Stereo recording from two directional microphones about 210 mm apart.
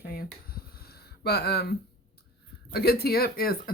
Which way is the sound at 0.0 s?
45° left (ahead or behind).